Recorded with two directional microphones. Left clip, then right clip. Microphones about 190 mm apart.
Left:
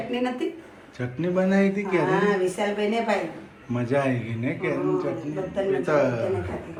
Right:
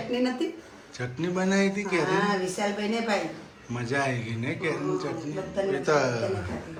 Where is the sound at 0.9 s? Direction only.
Centre (ahead or behind).